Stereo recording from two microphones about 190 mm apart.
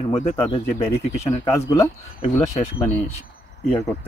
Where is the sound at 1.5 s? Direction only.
15° left (ahead or behind).